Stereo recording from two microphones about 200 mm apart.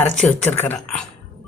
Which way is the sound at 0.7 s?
5° left (ahead or behind).